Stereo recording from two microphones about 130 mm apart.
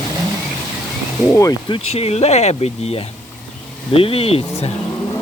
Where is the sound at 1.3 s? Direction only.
25° left (ahead or behind).